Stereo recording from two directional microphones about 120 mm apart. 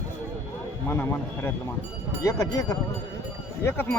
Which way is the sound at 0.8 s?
20° left (ahead or behind).